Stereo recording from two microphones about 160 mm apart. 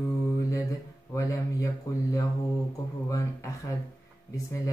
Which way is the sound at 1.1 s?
20° left (ahead or behind).